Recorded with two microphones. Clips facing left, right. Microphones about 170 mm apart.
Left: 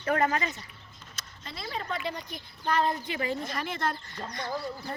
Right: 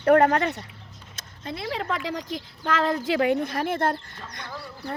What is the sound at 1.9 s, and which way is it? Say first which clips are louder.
Speech: right 5 dB; 90° right.